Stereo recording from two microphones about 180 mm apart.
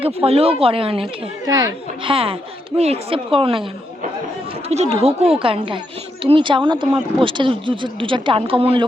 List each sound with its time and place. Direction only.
0.3 s speech: 30° right (ahead or behind)
4.7 s speech: 35° right (ahead or behind)